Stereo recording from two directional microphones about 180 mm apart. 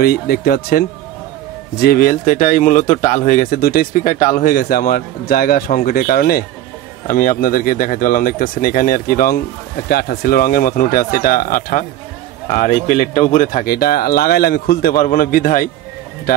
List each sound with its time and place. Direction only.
0.0 s speech: 60° left (ahead or behind)